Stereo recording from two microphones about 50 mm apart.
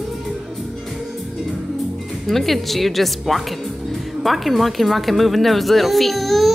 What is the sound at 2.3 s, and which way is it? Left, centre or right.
A woman's voice, centre.